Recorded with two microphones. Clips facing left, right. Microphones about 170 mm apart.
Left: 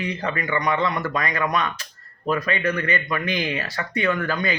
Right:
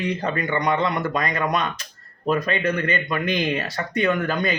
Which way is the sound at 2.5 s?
20° right (ahead or behind).